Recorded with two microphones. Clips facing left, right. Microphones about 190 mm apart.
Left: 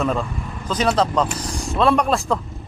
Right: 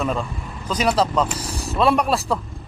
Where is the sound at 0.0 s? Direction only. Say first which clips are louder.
Left 2 dB; centre (ahead or behind).